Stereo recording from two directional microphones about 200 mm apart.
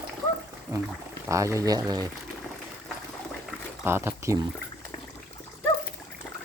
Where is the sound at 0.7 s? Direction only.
15° right (ahead or behind).